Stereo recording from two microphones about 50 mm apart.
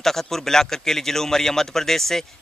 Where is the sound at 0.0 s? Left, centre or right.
Centre.